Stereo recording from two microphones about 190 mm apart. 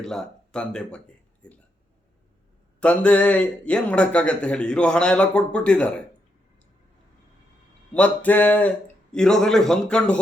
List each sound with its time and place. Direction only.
0.0 s speech: centre (ahead or behind)
2.8 s a man's voice: 5° left (ahead or behind)
7.9 s a sound: 5° left (ahead or behind)
9.1 s a man's voice: 5° left (ahead or behind)